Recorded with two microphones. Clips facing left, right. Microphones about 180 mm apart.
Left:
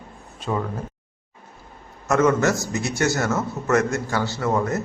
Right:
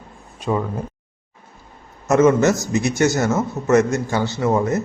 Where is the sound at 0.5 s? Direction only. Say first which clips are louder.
Right 4 dB; 15° right (ahead or behind).